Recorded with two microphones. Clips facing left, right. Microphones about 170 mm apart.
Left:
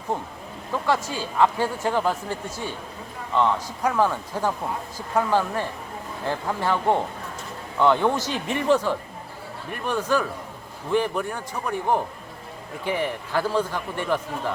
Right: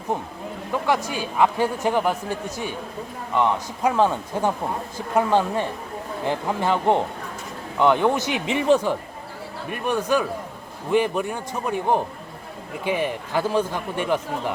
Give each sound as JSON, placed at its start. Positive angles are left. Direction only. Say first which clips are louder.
{"t": 0.1, "sound": "speech", "louder": "right 2 dB", "side_deg": -15}
{"t": 3.3, "sound": "a man's voice", "louder": "even", "side_deg": -15}